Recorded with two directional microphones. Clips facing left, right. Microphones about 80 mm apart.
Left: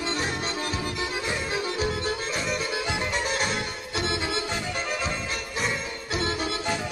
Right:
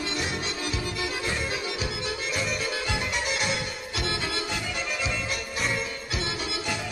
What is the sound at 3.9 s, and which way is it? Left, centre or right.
Music, left.